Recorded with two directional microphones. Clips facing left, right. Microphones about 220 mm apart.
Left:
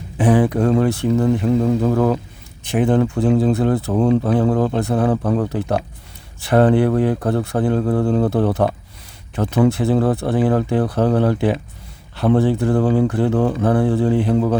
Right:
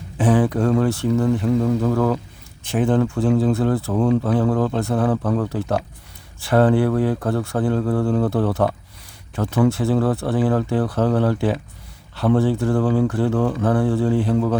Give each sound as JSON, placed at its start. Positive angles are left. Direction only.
{"t": 0.2, "sound": "speech", "side_deg": 15}